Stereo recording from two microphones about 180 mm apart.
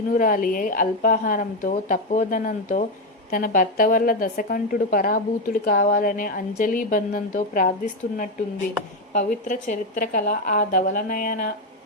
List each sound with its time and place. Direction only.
0.1 s a woman's voice: 50° left (ahead or behind)
9.1 s a woman's voice: 45° left (ahead or behind)